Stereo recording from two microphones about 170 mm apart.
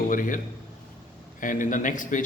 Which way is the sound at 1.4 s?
50° left (ahead or behind).